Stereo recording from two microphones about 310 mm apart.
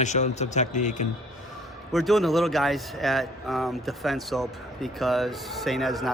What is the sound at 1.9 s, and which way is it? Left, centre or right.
Speech, centre.